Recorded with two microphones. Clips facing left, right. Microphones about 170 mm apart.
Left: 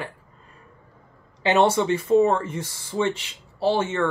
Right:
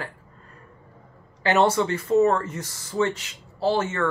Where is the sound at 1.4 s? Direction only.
20° left (ahead or behind).